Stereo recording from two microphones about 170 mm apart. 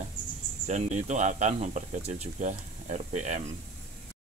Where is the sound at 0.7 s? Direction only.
40° right (ahead or behind).